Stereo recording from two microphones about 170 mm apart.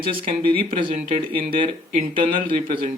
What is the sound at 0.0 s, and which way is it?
Speech, 30° right (ahead or behind).